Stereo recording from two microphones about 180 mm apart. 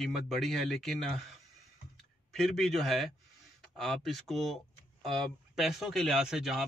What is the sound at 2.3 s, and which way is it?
Speech, centre (ahead or behind).